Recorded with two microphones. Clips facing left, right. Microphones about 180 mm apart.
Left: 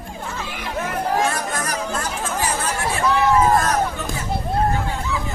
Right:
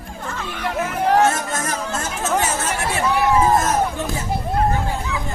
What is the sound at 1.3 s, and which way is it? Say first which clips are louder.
Music: right 1 dB; 25° right (ahead or behind).